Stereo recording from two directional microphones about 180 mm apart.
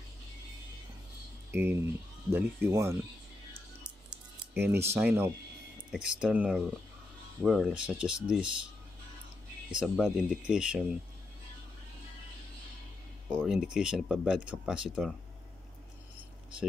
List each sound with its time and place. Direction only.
1.5 s speech: 15° right (ahead or behind)
4.1 s a sound: 10° right (ahead or behind)
5.9 s speech: 5° right (ahead or behind)
9.8 s speech: centre (ahead or behind)
13.3 s speech: 5° right (ahead or behind)